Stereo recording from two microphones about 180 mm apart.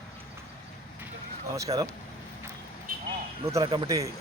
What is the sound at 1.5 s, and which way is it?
Speech, 20° right (ahead or behind).